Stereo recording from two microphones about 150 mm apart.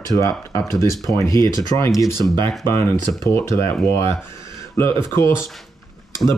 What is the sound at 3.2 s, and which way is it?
Speech, 20° left (ahead or behind).